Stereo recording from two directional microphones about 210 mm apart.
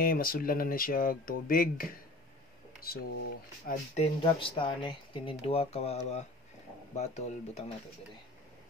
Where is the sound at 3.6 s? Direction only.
35° left (ahead or behind).